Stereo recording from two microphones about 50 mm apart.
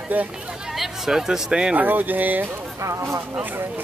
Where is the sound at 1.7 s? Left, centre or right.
Right.